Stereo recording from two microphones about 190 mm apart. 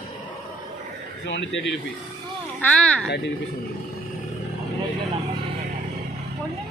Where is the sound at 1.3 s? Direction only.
70° left (ahead or behind).